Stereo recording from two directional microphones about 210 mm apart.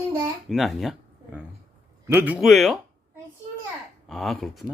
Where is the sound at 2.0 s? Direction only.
10° right (ahead or behind).